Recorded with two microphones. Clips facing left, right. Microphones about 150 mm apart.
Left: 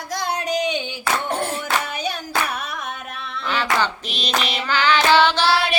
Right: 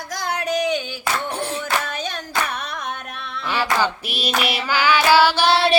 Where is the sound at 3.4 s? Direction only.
10° right (ahead or behind).